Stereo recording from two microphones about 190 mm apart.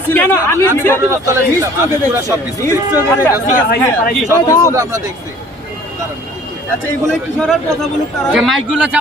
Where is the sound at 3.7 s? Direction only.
55° left (ahead or behind).